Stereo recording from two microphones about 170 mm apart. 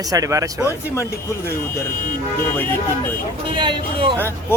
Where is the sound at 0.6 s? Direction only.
15° left (ahead or behind).